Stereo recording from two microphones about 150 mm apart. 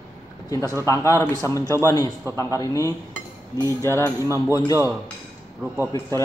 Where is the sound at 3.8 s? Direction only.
15° left (ahead or behind).